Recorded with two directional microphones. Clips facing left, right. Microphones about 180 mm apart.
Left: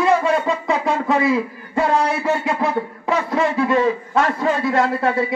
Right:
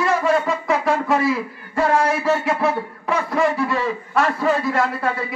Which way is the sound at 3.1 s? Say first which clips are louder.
Even; 20° left (ahead or behind).